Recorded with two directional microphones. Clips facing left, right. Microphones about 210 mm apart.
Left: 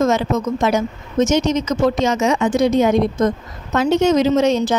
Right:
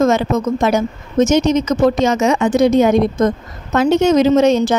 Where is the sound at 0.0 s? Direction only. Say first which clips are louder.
Right 3 dB; 55° right (ahead or behind).